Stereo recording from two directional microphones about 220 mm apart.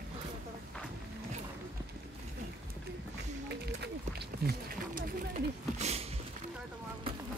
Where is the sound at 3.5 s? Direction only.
50° right (ahead or behind).